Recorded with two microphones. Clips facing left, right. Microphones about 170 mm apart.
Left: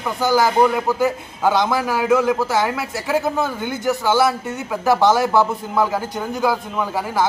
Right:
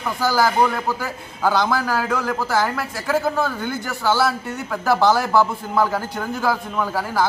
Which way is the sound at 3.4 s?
20° left (ahead or behind).